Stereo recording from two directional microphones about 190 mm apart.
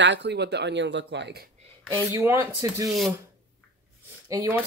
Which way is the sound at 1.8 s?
10° left (ahead or behind).